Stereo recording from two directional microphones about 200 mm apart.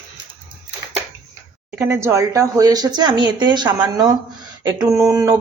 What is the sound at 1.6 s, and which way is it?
Speech, 10° right (ahead or behind).